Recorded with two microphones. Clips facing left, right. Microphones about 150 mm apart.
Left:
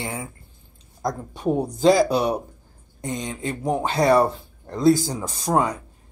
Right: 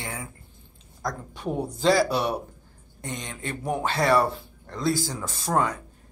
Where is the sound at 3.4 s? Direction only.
35° left (ahead or behind).